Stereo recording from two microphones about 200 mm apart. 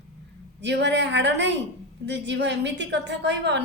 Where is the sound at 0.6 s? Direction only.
60° right (ahead or behind).